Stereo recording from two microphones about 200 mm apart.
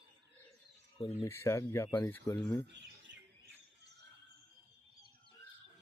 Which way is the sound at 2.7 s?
65° right (ahead or behind).